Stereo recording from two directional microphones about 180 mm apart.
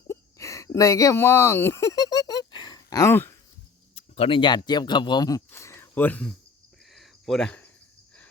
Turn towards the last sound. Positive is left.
turn(degrees=5)  # may be behind; listen again after turning